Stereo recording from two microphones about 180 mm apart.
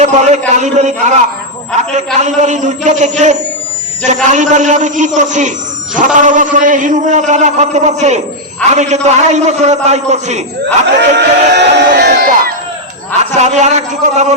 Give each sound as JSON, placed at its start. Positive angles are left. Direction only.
{"t": 0.0, "sound": "a man's voice", "side_deg": -40}
{"t": 2.2, "sound": "a man's voice", "side_deg": -40}
{"t": 10.9, "sound": "speech", "side_deg": -70}
{"t": 13.3, "sound": "a man's voice", "side_deg": -40}